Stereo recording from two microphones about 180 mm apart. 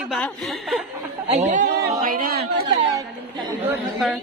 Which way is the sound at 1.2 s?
40° right (ahead or behind).